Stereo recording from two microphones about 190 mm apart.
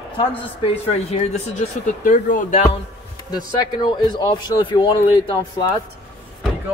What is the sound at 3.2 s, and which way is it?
Speech, 20° left (ahead or behind).